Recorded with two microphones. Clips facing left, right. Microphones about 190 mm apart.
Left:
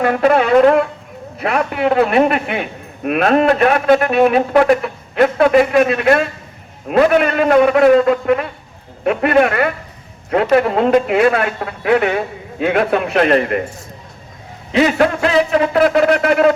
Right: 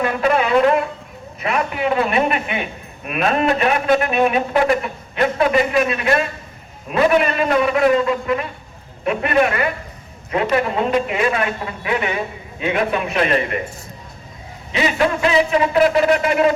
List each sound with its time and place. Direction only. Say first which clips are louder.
0.0 s a man's voice: left 5 dB; 50° left (ahead or behind)
1.4 s a man's voice: left 4 dB; 55° left (ahead or behind)
14.8 s a man's voice: left 5 dB; 55° left (ahead or behind)